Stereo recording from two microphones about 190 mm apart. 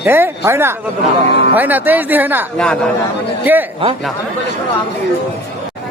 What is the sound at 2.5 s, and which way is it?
Speech, 5° left (ahead or behind).